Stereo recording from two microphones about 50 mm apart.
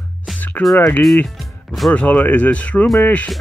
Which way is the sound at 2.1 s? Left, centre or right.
Left.